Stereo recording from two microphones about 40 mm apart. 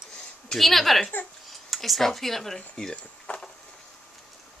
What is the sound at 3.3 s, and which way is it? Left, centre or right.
Vehicle, left.